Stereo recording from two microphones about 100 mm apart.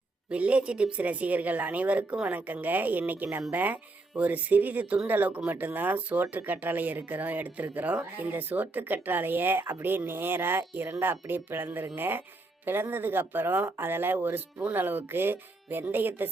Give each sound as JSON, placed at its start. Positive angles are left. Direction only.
{"t": 0.3, "sound": "a woman's voice", "side_deg": -15}